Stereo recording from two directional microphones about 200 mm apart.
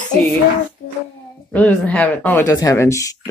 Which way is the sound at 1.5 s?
5° left (ahead or behind).